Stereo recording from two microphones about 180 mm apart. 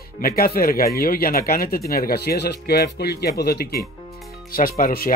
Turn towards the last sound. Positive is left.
turn(degrees=55)  # may be behind; listen again after turning